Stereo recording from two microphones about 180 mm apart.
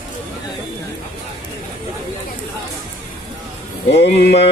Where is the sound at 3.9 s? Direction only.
70° left (ahead or behind).